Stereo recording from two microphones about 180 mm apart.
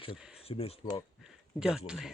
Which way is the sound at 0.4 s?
30° left (ahead or behind).